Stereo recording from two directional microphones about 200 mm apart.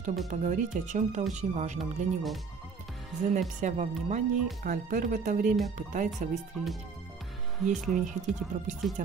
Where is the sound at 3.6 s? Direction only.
35° right (ahead or behind).